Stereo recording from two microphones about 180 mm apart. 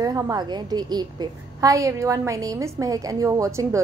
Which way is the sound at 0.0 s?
20° right (ahead or behind).